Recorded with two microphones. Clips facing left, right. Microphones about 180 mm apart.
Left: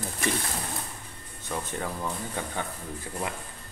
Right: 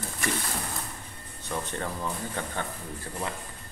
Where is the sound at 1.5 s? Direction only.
5° left (ahead or behind).